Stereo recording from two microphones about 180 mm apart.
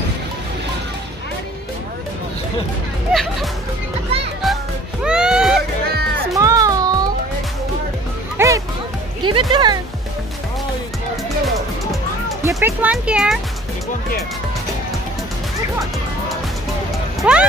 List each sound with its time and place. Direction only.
3.1 s music: centre (ahead or behind)
5.0 s music: 5° right (ahead or behind)
6.3 s music: 20° right (ahead or behind)
8.4 s music: 15° right (ahead or behind)
12.4 s speech: 15° right (ahead or behind)
17.2 s speech: 5° right (ahead or behind)